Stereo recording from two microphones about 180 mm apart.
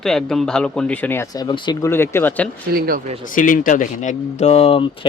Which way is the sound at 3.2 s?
50° left (ahead or behind).